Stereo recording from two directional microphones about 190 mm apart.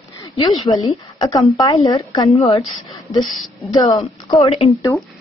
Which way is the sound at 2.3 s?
30° left (ahead or behind).